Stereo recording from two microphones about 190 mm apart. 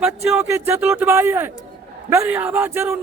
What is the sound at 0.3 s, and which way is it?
A man's voice, 10° right (ahead or behind).